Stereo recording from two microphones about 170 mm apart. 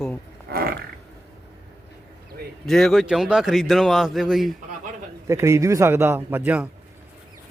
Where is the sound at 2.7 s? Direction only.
Centre (ahead or behind).